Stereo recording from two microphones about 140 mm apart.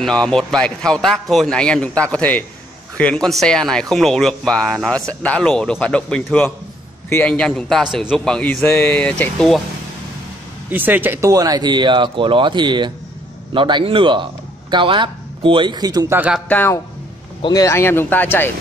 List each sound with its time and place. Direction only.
0.0 s speech: 5° left (ahead or behind)
10.7 s speech: 15° right (ahead or behind)
16.2 s speech: 5° right (ahead or behind)
16.4 s speech: 15° left (ahead or behind)